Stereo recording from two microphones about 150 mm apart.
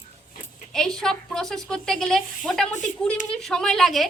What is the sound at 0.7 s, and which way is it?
A woman's voice, 5° left (ahead or behind).